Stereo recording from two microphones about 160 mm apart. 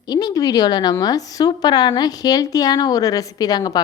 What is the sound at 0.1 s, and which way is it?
A woman's voice, 25° left (ahead or behind).